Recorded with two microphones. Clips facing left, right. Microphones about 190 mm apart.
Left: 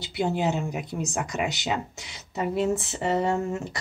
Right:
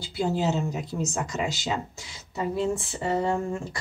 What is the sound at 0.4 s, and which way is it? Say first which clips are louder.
Speech: even; 15° left (ahead or behind).